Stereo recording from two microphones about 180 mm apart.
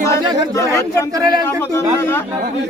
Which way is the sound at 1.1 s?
20° right (ahead or behind).